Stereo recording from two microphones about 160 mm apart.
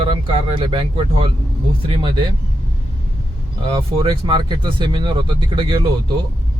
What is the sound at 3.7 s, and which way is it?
Speech, 30° right (ahead or behind).